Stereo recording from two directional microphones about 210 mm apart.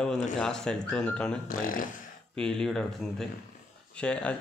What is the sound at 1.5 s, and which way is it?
Speech, 40° left (ahead or behind).